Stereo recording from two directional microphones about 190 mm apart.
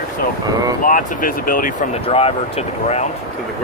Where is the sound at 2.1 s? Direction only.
30° left (ahead or behind).